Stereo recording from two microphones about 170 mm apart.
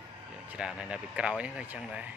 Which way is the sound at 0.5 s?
5° right (ahead or behind).